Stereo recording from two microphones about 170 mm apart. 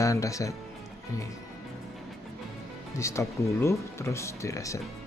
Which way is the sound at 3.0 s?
15° left (ahead or behind).